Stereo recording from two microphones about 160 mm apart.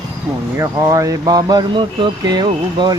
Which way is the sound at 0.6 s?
20° right (ahead or behind).